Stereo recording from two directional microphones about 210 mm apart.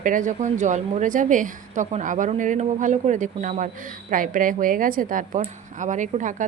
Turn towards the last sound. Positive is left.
turn(degrees=-35)  # may be behind; listen again after turning